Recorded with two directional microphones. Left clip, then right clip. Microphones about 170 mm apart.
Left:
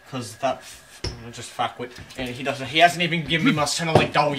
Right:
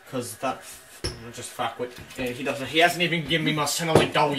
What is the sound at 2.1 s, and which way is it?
A man's voice, 15° left (ahead or behind).